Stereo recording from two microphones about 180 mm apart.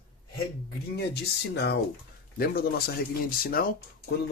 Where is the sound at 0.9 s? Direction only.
65° left (ahead or behind).